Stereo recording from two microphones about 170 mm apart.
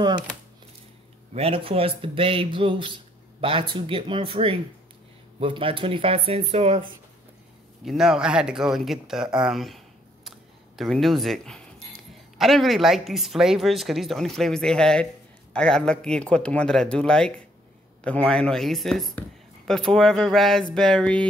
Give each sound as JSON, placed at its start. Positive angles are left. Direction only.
{"t": 1.3, "sound": "speech", "side_deg": -35}
{"t": 7.8, "sound": "speech", "side_deg": 0}
{"t": 10.8, "sound": "speech", "side_deg": 0}